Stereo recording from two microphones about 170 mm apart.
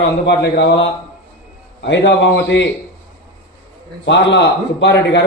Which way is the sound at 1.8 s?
90° left.